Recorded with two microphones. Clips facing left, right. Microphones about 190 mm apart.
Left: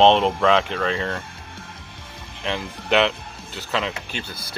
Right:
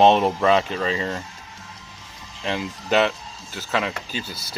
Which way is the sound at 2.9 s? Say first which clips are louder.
Even; centre (ahead or behind).